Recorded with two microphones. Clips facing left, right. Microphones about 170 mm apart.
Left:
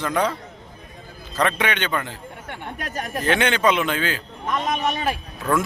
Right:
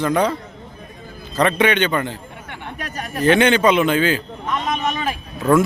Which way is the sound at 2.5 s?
45° left (ahead or behind).